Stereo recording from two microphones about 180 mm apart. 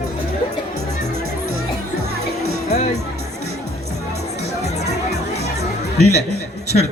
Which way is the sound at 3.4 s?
60° right (ahead or behind).